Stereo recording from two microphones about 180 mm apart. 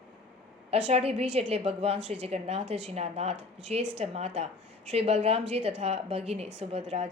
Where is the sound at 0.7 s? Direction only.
35° right (ahead or behind).